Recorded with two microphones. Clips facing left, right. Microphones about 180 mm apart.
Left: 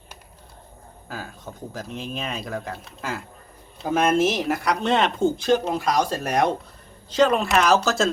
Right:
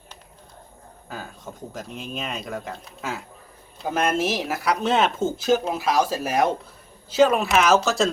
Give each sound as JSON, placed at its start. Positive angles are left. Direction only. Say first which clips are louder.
{"t": 1.0, "sound": "speech", "louder": "left 1 dB", "side_deg": 0}